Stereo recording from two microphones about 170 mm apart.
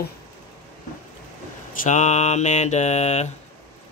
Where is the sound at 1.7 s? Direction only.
45° left (ahead or behind).